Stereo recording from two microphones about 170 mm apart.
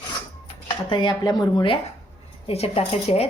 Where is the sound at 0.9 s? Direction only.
25° left (ahead or behind).